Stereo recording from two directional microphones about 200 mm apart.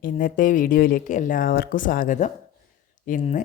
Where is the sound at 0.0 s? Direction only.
45° left (ahead or behind).